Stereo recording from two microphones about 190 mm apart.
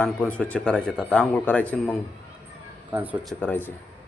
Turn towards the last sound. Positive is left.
turn(degrees=10)  # may be behind; listen again after turning